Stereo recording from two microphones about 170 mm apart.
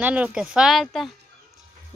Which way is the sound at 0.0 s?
10° right (ahead or behind).